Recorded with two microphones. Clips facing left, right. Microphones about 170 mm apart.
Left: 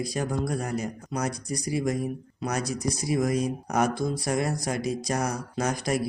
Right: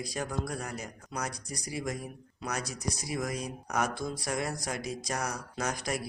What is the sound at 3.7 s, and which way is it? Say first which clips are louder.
Speech: left 6 dB; 35° left (ahead or behind).